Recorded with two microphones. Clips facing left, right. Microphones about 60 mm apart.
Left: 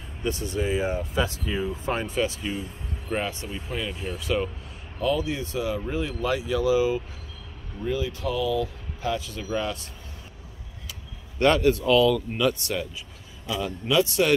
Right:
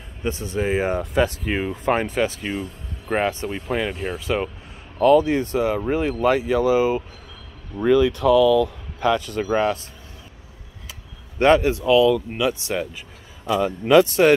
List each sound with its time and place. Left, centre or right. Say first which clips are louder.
0.2 s speech: right 3 dB; right
0.7 s speech: right 5 dB; right
0.9 s speech: right 6 dB; right
2.0 s speech: right 4 dB; right
7.8 s speech: right 11 dB; right
10.9 s a sound: right 1 dB; right
11.8 s speech: right 4 dB; centre
13.5 s speech: right 9 dB; right